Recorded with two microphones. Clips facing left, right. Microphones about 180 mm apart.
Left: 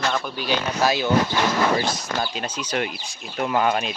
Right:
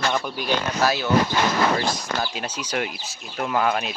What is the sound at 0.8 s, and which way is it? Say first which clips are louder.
Speech: left 1 dB; 15° left (ahead or behind).